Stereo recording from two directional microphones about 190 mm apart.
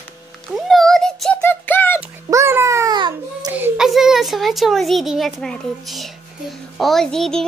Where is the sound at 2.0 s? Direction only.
15° right (ahead or behind).